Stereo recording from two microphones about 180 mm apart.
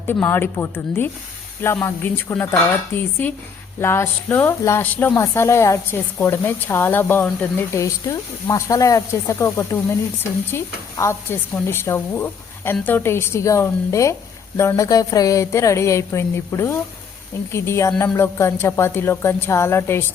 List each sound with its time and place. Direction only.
0.1 s speech: 10° left (ahead or behind)